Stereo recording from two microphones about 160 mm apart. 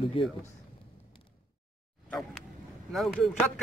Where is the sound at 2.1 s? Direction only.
5° left (ahead or behind).